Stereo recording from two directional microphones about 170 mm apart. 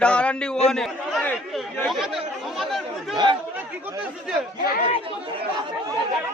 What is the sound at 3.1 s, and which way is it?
Speech, 25° right (ahead or behind).